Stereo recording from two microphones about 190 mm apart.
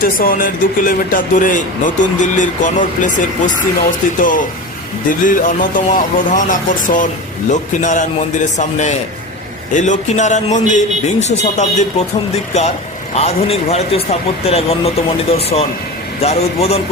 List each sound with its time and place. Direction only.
0.2 s speech: 45° left (ahead or behind)